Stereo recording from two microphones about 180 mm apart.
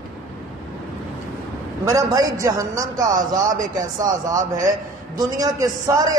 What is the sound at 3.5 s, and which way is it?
Speech, 45° right (ahead or behind).